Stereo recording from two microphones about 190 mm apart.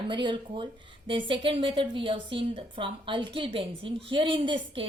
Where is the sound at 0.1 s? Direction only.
25° right (ahead or behind).